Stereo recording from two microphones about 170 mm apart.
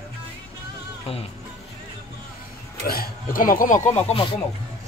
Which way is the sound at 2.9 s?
60° left (ahead or behind).